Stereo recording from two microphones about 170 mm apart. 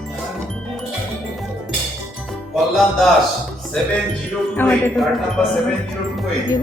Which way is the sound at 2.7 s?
Centre (ahead or behind).